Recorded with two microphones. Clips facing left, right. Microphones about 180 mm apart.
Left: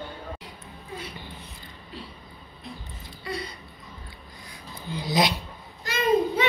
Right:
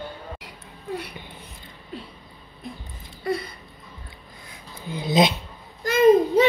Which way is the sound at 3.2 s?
50° right (ahead or behind).